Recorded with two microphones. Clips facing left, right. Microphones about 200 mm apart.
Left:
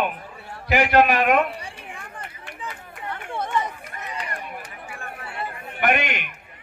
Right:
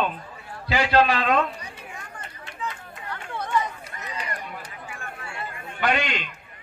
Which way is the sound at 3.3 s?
20° left (ahead or behind).